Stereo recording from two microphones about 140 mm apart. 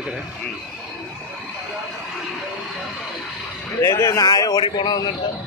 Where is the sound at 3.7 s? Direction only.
20° left (ahead or behind).